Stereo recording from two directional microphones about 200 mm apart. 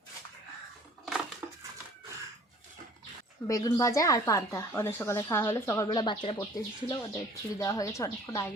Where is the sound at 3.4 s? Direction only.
15° left (ahead or behind).